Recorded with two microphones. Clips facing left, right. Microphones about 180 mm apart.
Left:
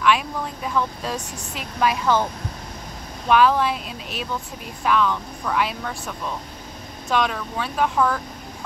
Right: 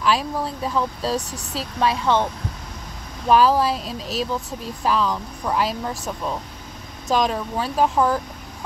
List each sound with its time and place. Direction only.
0.0 s speech: 35° right (ahead or behind)
3.3 s speech: 35° right (ahead or behind)
7.1 s speech: 35° right (ahead or behind)